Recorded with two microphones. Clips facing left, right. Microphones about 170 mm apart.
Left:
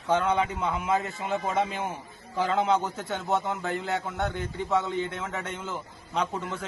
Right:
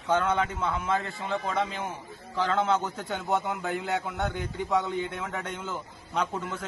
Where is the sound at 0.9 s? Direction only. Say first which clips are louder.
Left 2 dB; 15° left (ahead or behind).